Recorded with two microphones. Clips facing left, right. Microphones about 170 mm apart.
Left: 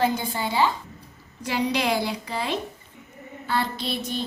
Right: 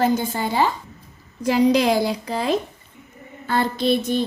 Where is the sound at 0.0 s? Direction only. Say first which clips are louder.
Right 4 dB; 45° right (ahead or behind).